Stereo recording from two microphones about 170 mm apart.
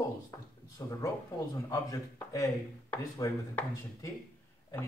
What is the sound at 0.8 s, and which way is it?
Speech, 15° left (ahead or behind).